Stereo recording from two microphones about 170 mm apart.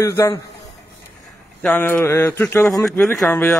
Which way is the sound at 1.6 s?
10° left (ahead or behind).